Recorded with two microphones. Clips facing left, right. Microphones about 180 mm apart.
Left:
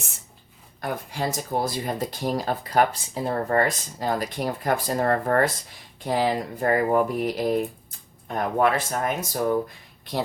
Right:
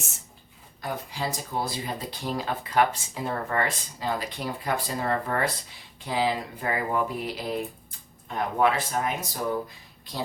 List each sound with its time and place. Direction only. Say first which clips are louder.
0.8 s speech: left 3 dB; 50° left (ahead or behind)